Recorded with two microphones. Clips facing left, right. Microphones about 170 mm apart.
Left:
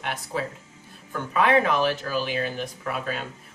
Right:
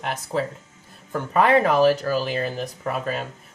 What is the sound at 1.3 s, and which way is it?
Speech, 45° right (ahead or behind).